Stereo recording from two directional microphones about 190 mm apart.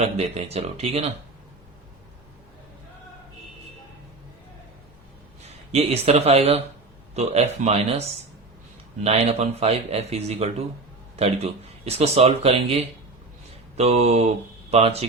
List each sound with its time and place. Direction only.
0.0 s speech: 35° right (ahead or behind)
5.7 s speech: 35° right (ahead or behind)
9.0 s speech: 35° right (ahead or behind)